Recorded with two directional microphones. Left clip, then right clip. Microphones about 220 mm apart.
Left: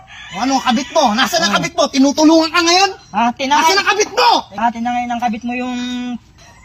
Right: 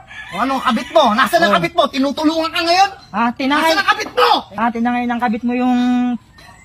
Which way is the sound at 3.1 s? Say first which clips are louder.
Left 2 dB; 10° right (ahead or behind).